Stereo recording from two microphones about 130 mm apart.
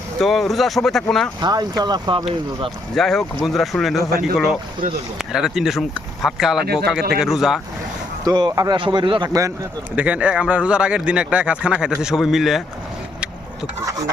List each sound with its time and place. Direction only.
0.2 s speech: centre (ahead or behind)
1.4 s speech: 30° right (ahead or behind)
2.9 s speech: centre (ahead or behind)
5.1 s speech: 5° right (ahead or behind)
8.3 s speech: 30° right (ahead or behind)
9.9 s speech: 10° right (ahead or behind)